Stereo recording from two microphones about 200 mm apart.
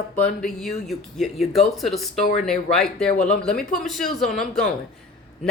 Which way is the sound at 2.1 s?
35° left (ahead or behind).